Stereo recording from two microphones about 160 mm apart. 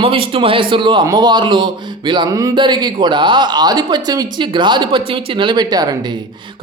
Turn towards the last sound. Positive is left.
turn(degrees=-25)  # may be behind; listen again after turning